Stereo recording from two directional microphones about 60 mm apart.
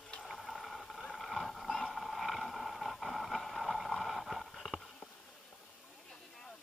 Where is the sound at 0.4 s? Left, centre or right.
Centre.